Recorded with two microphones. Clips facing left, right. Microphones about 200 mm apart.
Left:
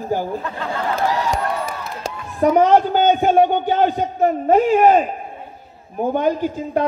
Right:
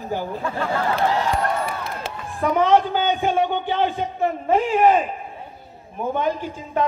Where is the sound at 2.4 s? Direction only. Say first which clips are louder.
Left 4 dB; 40° left (ahead or behind).